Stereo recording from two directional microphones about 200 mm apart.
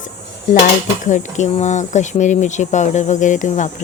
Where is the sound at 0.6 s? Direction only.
40° left (ahead or behind).